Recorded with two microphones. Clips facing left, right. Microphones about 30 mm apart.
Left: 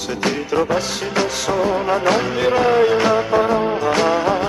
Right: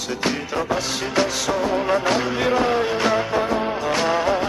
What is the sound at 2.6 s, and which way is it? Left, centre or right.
Music, left.